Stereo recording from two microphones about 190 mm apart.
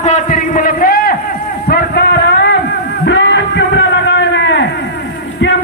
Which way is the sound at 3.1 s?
65° left (ahead or behind).